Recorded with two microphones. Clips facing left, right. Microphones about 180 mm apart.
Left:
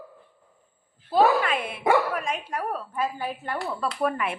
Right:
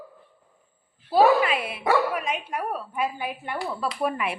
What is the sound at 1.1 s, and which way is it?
A woman's voice, 10° right (ahead or behind).